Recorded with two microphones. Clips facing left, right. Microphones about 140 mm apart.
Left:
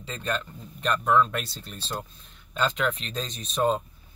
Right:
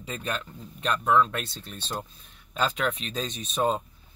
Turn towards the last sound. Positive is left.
turn(degrees=0)  # may be behind; listen again after turning